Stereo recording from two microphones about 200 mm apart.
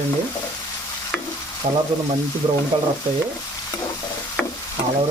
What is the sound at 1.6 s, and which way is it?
Speech, 35° right (ahead or behind).